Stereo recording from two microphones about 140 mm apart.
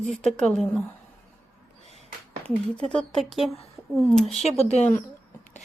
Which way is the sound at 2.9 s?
5° left (ahead or behind).